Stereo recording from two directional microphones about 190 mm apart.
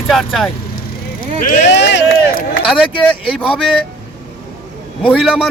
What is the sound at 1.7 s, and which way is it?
Speech, 65° left (ahead or behind).